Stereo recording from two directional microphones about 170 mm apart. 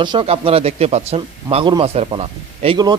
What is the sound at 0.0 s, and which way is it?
A man's voice, 30° right (ahead or behind).